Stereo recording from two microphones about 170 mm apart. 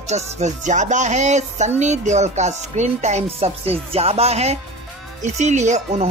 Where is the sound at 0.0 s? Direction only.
40° right (ahead or behind).